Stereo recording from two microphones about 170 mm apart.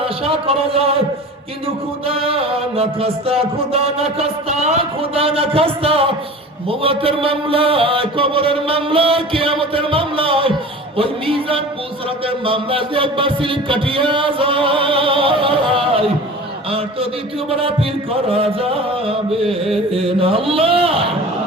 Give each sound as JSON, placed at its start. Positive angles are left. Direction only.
{"t": 0.0, "sound": "music", "side_deg": -35}
{"t": 17.5, "sound": "music", "side_deg": -35}